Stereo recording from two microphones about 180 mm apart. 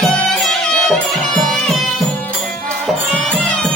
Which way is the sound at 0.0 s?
Centre (ahead or behind).